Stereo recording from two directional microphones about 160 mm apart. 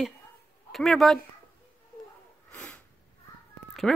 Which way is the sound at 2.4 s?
5° left (ahead or behind).